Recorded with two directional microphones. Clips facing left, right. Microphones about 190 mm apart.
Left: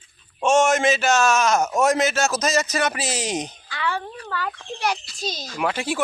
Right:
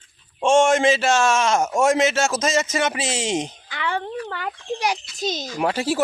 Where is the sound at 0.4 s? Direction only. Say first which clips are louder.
Right 2 dB; 30° right (ahead or behind).